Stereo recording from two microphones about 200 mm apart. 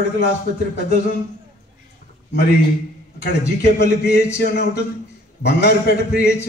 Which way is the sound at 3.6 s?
55° left (ahead or behind).